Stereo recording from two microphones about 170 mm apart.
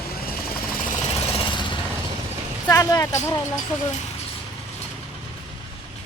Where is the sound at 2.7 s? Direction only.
20° left (ahead or behind).